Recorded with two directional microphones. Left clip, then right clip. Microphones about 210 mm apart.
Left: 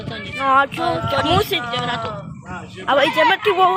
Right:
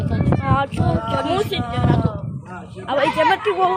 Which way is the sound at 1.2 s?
15° left (ahead or behind).